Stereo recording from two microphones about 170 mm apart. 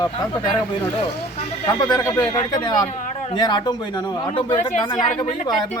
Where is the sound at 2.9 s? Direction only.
45° left (ahead or behind).